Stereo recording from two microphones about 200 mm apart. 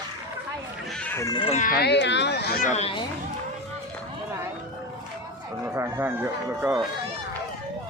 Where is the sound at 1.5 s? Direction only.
45° left (ahead or behind).